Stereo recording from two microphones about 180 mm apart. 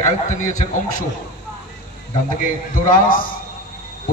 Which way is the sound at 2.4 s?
50° left (ahead or behind).